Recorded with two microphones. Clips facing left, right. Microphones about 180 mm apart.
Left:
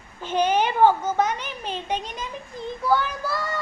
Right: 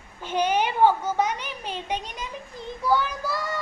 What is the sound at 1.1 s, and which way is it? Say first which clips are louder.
Child singing: left 2 dB; 10° right (ahead or behind).